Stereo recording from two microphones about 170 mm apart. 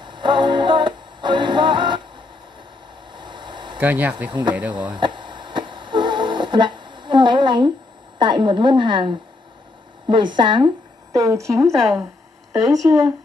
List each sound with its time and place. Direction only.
0.0 s music: 25° right (ahead or behind)
3.1 s vehicle: 25° right (ahead or behind)
3.7 s speech: 10° right (ahead or behind)
4.9 s radio: 30° right (ahead or behind)
8.2 s a woman's voice: 30° right (ahead or behind)